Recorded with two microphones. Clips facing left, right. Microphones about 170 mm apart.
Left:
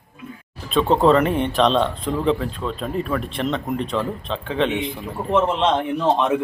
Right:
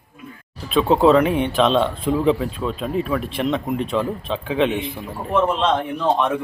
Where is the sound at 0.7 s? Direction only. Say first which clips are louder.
Right 1 dB; centre (ahead or behind).